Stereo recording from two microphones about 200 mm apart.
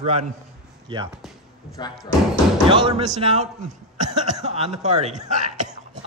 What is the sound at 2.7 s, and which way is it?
A man's voice, 30° right (ahead or behind).